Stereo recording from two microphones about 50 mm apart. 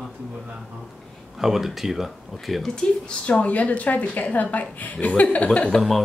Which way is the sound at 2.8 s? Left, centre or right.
Centre.